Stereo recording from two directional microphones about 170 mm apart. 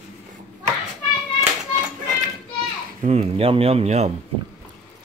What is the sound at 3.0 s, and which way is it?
Speech, 40° right (ahead or behind).